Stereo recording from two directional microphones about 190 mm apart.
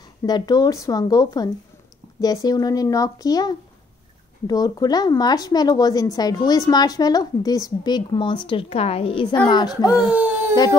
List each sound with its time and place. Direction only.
0.2 s speech: 20° left (ahead or behind)